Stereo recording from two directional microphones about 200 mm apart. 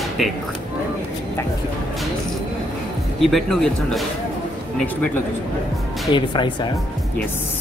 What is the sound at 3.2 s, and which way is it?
Speech, centre (ahead or behind).